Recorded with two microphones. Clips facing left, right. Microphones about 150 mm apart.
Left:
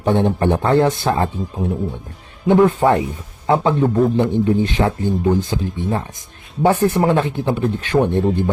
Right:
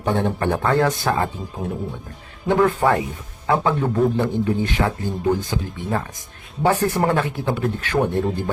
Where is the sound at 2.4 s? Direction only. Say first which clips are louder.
Left 4 dB; 20° left (ahead or behind).